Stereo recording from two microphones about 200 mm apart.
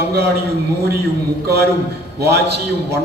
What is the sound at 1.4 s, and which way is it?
A man's voice, 55° right (ahead or behind).